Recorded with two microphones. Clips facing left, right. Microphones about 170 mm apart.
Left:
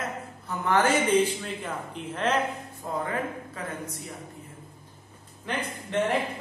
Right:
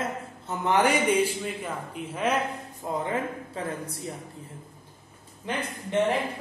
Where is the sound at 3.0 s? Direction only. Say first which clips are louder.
Right 1 dB; 30° right (ahead or behind).